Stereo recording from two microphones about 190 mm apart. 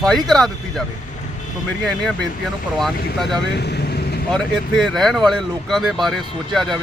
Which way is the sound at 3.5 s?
60° left (ahead or behind).